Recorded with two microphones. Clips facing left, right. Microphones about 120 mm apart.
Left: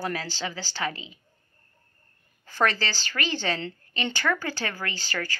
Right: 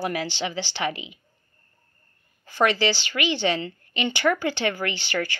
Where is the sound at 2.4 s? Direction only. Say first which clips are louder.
Right 4 dB; 15° right (ahead or behind).